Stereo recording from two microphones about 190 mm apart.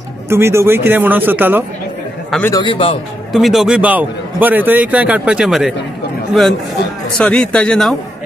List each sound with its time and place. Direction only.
0.3 s a man's voice: 15° right (ahead or behind)
2.5 s a man's voice: 25° left (ahead or behind)
3.3 s a man's voice: centre (ahead or behind)
7.2 s speech: 5° left (ahead or behind)